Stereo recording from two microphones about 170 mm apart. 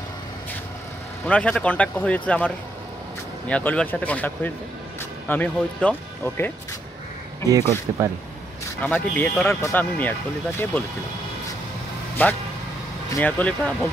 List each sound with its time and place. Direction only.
1.2 s speech: 5° left (ahead or behind)
7.4 s speech: 20° right (ahead or behind)
8.8 s speech: 10° left (ahead or behind)
12.2 s speech: 10° left (ahead or behind)